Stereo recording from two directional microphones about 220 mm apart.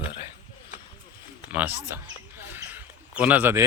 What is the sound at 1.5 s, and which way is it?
Speech, 5° right (ahead or behind).